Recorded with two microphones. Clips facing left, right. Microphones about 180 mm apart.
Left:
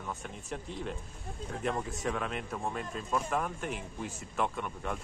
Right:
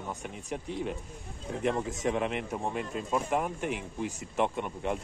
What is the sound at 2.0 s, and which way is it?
Speech, 20° right (ahead or behind).